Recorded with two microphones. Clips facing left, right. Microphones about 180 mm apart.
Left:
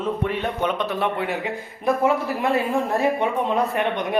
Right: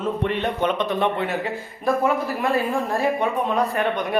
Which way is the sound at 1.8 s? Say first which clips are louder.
Left 1 dB; 25° left (ahead or behind).